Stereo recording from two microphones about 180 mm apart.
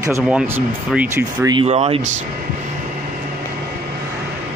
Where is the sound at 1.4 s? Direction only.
25° right (ahead or behind).